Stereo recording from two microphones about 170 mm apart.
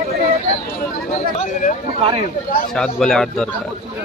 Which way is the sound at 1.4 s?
50° left (ahead or behind).